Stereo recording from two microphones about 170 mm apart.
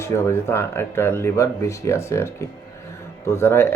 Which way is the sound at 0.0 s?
15° left (ahead or behind).